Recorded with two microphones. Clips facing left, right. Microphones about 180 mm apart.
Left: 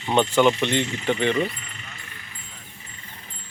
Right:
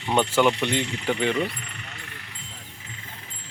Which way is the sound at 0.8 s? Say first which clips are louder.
Left 2 dB; 65° right (ahead or behind).